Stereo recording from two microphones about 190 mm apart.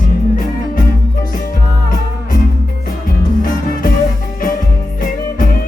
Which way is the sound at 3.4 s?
45° left (ahead or behind).